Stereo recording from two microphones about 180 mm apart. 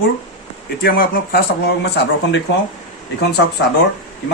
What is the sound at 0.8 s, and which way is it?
Speech, 55° left (ahead or behind).